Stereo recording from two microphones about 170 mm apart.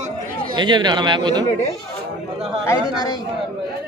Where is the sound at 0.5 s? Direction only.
25° right (ahead or behind).